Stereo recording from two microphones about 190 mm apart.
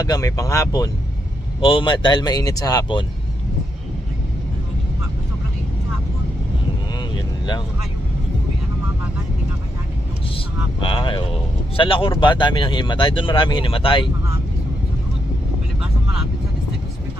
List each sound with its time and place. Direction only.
0.0 s speech: 20° left (ahead or behind)
10.8 s speech: 25° left (ahead or behind)